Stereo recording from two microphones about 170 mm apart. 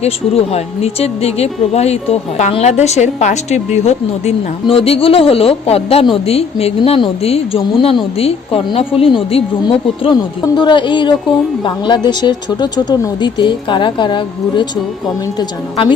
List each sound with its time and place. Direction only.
0.0 s a woman's voice: 35° left (ahead or behind)